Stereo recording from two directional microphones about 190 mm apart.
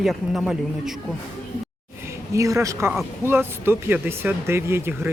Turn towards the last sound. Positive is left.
turn(degrees=-15)  # may be behind; listen again after turning